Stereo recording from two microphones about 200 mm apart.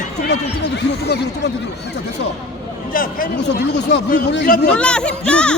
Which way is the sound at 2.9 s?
45° left (ahead or behind).